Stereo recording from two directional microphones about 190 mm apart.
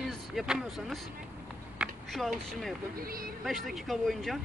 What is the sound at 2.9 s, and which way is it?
Speech, 50° right (ahead or behind).